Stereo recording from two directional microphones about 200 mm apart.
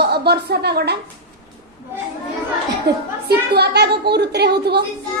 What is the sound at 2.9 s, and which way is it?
A woman's voice, 55° right (ahead or behind).